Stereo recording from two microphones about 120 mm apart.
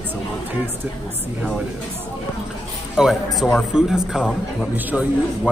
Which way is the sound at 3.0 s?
Centre (ahead or behind).